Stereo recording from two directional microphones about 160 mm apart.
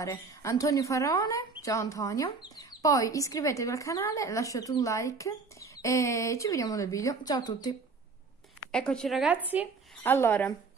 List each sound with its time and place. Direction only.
0.0 s speech: 20° left (ahead or behind)
8.7 s a woman's voice: 5° left (ahead or behind)
10.0 s speech: 15° left (ahead or behind)